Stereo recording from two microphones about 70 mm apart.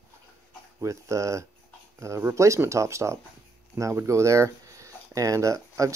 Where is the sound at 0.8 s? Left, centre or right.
Right.